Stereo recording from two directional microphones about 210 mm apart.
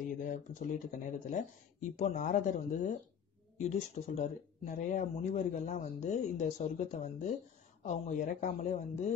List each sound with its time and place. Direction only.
0.2 s speech: 40° left (ahead or behind)